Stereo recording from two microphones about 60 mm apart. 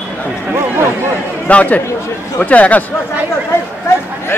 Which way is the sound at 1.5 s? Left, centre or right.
Left.